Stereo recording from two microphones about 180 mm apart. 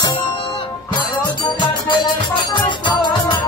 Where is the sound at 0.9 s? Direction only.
25° left (ahead or behind).